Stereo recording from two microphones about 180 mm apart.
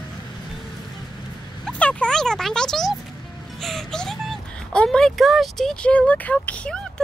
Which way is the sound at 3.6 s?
Centre (ahead or behind).